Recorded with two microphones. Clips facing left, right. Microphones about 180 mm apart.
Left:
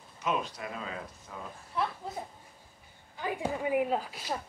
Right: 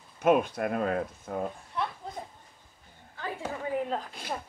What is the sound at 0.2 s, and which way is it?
Speech, 55° right (ahead or behind).